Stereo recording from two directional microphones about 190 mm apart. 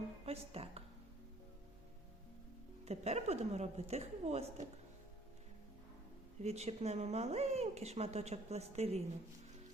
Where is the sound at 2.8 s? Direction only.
35° right (ahead or behind).